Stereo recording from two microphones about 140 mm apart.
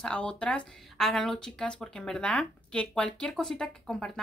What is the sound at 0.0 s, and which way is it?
Speech, 5° left (ahead or behind).